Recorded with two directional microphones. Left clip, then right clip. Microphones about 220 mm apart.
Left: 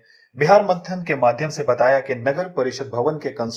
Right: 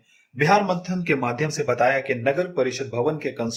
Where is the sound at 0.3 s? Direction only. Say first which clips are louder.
Left 5 dB; centre (ahead or behind).